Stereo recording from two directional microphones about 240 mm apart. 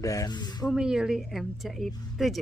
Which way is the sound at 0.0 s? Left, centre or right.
Centre.